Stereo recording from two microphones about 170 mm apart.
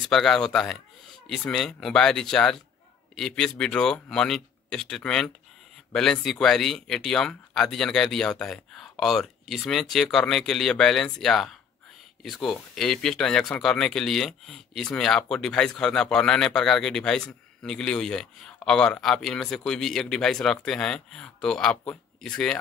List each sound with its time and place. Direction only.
0.0 s speech: 5° left (ahead or behind)